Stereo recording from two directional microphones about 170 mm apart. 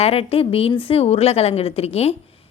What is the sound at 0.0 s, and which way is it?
A woman's voice, 35° left (ahead or behind).